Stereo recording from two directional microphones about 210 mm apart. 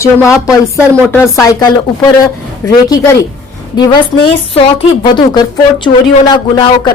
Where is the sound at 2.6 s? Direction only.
10° left (ahead or behind).